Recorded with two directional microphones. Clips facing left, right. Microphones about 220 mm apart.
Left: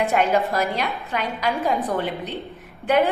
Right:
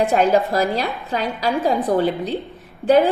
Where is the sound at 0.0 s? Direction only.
30° right (ahead or behind).